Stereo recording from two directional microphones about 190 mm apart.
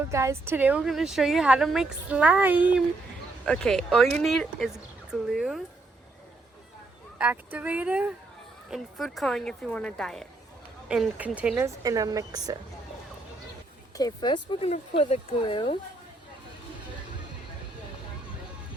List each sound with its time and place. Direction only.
0.1 s speech: 15° right (ahead or behind)
3.4 s speech: 5° left (ahead or behind)
7.2 s a woman's voice: 10° right (ahead or behind)
13.9 s speech: 20° left (ahead or behind)